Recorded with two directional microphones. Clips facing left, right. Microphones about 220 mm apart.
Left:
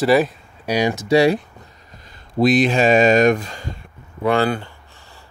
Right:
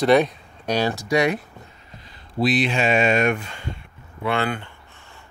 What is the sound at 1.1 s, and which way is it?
Speech, 30° left (ahead or behind).